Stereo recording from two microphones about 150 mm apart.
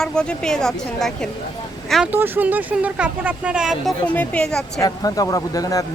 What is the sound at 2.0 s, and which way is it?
Speech, 15° right (ahead or behind).